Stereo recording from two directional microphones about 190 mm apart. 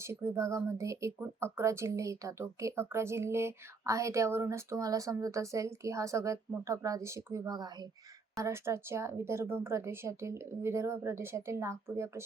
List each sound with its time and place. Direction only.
0.0 s speech: 15° right (ahead or behind)